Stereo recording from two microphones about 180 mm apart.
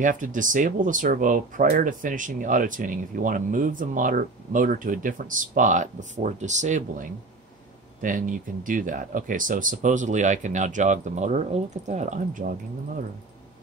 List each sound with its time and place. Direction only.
0.0 s speech: 45° right (ahead or behind)